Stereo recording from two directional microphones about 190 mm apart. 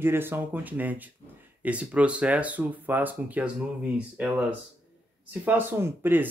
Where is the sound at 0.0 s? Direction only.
10° right (ahead or behind).